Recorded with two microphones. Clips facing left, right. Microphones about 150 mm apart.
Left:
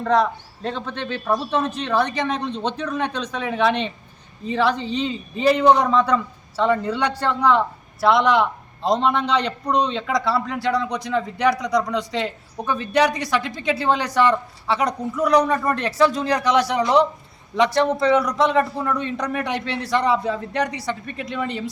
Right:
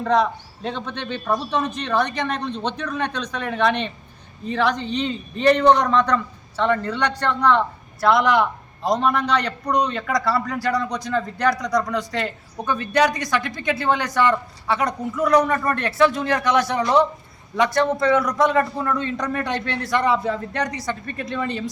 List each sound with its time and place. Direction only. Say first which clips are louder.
0.0 s a man's voice: even; centre (ahead or behind)
8.8 s a man's voice: left 1 dB; 25° left (ahead or behind)
9.8 s a man's voice: even; 5° left (ahead or behind)